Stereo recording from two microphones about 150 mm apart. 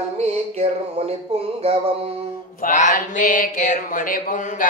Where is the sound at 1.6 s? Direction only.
40° right (ahead or behind).